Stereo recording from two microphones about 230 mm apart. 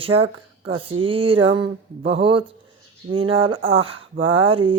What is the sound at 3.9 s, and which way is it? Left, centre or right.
Speech, right.